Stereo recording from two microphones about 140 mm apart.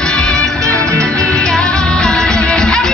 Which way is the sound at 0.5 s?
25° right (ahead or behind).